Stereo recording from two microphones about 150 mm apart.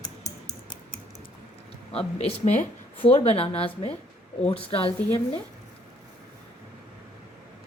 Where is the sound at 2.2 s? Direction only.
50° left (ahead or behind).